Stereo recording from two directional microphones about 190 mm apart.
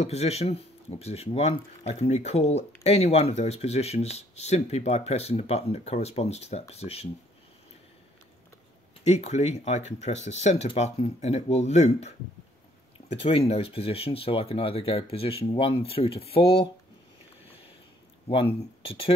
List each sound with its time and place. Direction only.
0.0 s speech: 35° left (ahead or behind)
9.0 s speech: 35° left (ahead or behind)
13.2 s speech: 30° left (ahead or behind)
18.3 s speech: 30° left (ahead or behind)